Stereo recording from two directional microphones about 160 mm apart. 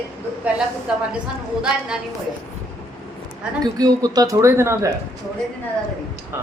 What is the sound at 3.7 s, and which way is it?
Speech, 25° right (ahead or behind).